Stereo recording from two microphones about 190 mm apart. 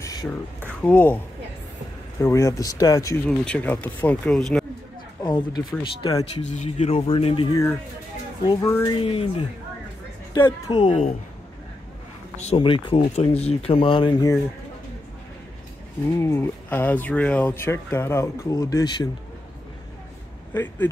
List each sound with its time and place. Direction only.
0.0 s speech: 20° left (ahead or behind)
2.2 s speech: 15° left (ahead or behind)
3.3 s speech: 5° left (ahead or behind)
5.2 s speech: 25° left (ahead or behind)
6.4 s speech: 35° left (ahead or behind)
8.5 s speech: 15° left (ahead or behind)
9.0 s speech: 30° left (ahead or behind)
10.3 s speech: 25° left (ahead or behind)
12.4 s speech: 30° left (ahead or behind)
16.1 s speech: 15° left (ahead or behind)
20.5 s speech: 10° left (ahead or behind)